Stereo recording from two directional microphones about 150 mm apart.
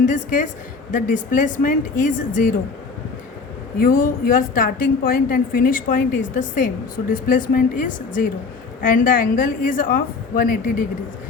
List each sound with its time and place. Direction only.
0.0 s a woman's voice: 60° left (ahead or behind)
3.8 s a woman's voice: 70° left (ahead or behind)